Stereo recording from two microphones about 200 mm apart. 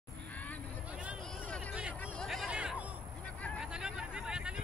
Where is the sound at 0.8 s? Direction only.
5° right (ahead or behind).